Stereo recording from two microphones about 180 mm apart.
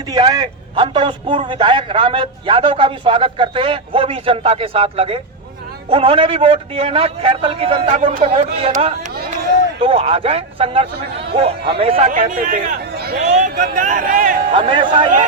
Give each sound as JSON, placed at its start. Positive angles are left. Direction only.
{"t": 0.1, "sound": "a man's voice", "side_deg": -25}
{"t": 13.2, "sound": "a man's voice", "side_deg": -45}
{"t": 14.5, "sound": "a man's voice", "side_deg": -30}